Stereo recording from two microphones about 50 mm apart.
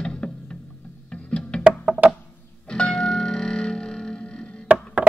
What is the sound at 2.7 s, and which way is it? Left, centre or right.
Music, centre.